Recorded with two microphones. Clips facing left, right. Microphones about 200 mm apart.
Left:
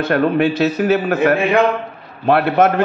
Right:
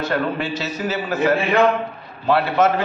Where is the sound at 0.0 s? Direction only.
60° left (ahead or behind).